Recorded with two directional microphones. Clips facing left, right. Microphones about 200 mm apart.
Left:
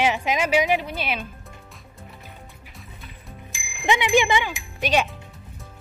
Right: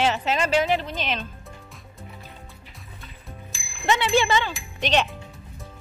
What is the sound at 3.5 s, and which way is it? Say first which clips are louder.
Music: left 2 dB; 20° left (ahead or behind).